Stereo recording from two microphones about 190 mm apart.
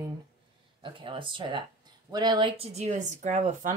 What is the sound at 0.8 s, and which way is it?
Speech, 25° right (ahead or behind).